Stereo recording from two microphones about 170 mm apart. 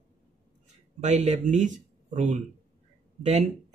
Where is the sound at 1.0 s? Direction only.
45° right (ahead or behind).